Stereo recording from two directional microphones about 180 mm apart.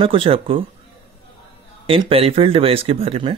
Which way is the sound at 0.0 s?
30° right (ahead or behind).